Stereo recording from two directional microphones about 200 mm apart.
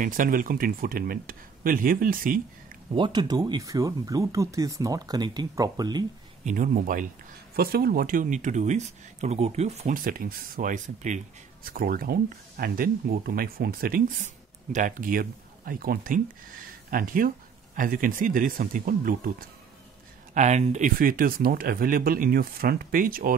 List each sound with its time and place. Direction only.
0.0 s speech: 40° right (ahead or behind)
2.9 s speech: 25° right (ahead or behind)
6.4 s speech: 40° right (ahead or behind)
20.3 s speech: 35° right (ahead or behind)